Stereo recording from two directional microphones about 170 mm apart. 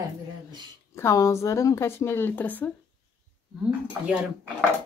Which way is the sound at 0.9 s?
15° left (ahead or behind).